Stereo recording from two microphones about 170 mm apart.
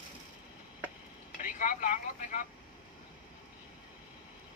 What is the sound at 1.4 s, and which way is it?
Vehicle, 50° left (ahead or behind).